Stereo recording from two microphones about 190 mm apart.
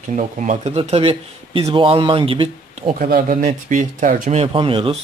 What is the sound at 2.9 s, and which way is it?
Speech, 45° right (ahead or behind).